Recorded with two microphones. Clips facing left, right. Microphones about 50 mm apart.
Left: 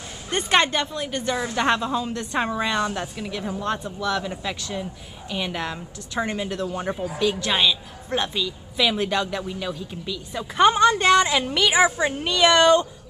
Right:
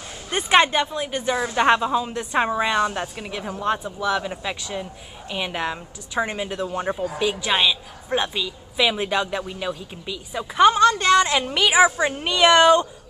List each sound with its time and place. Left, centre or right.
0.3 s a woman's voice: centre
10.6 s a woman's voice: centre
11.1 s a woman's voice: centre